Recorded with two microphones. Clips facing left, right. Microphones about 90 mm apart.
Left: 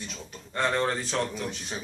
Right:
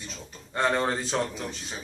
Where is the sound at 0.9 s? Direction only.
30° right (ahead or behind).